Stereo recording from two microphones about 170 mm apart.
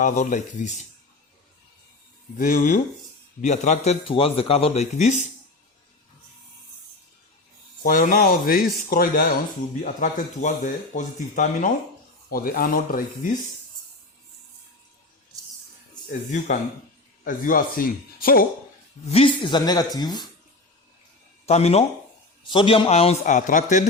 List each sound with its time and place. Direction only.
0.0 s speech: 50° left (ahead or behind)
2.4 s a man's voice: 55° left (ahead or behind)
7.8 s speech: 50° left (ahead or behind)
9.8 s speech: 50° left (ahead or behind)
12.3 s speech: 60° left (ahead or behind)
17.2 s speech: 55° left (ahead or behind)
19.0 s speech: 35° left (ahead or behind)
21.4 s a man's voice: 40° left (ahead or behind)
23.2 s speech: 50° left (ahead or behind)